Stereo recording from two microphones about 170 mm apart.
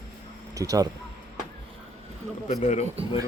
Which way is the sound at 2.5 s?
45° left (ahead or behind).